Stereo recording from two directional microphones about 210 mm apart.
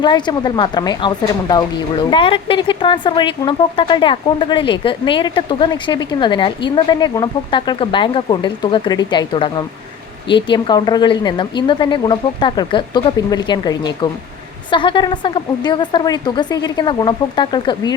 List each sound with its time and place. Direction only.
0.0 s a woman's voice: 20° left (ahead or behind)